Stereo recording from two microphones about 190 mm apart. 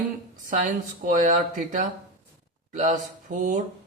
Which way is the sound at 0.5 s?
45° right (ahead or behind).